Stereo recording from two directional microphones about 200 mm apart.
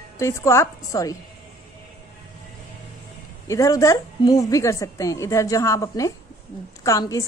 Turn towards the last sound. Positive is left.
turn(degrees=15)  # may be behind; listen again after turning